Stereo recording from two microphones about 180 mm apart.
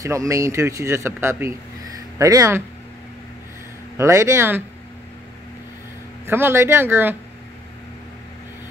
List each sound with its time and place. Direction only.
0.0 s speech: 15° right (ahead or behind)
3.9 s speech: 15° right (ahead or behind)
6.2 s speech: 15° right (ahead or behind)